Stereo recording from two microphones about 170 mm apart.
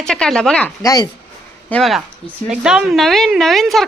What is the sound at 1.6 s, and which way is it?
Speech, 5° left (ahead or behind).